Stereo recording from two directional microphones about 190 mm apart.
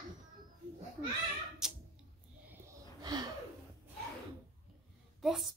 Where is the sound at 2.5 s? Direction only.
20° right (ahead or behind).